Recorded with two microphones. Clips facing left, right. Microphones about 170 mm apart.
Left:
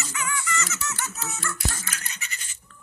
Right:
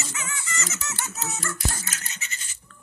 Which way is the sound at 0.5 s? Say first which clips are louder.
Left 3 dB; 35° right (ahead or behind).